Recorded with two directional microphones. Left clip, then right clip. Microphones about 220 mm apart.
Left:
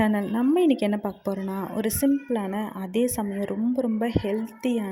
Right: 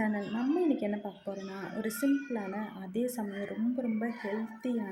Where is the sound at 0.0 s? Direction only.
45° left (ahead or behind).